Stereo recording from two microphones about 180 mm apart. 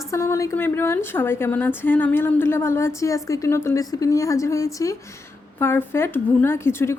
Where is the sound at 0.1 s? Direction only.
15° left (ahead or behind).